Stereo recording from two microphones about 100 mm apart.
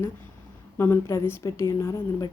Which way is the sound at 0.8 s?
25° left (ahead or behind).